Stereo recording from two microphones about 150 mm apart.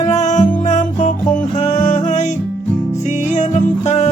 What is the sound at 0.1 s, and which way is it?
Music, 55° left (ahead or behind).